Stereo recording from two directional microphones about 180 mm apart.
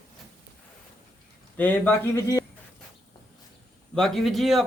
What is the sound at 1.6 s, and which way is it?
Speech, 10° left (ahead or behind).